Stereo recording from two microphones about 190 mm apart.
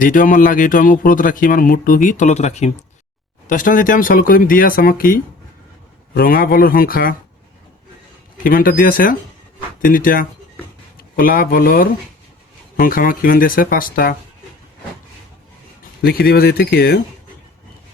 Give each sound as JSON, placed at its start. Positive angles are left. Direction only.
{"t": 0.0, "sound": "a man's voice", "side_deg": 45}
{"t": 8.4, "sound": "a man's voice", "side_deg": 45}
{"t": 16.0, "sound": "a man's voice", "side_deg": 50}